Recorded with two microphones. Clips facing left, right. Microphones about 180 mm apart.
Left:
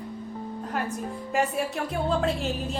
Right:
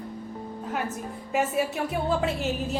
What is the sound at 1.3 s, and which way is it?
A woman's voice, 5° right (ahead or behind).